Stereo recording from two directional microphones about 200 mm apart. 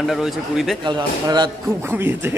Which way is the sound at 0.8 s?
20° right (ahead or behind).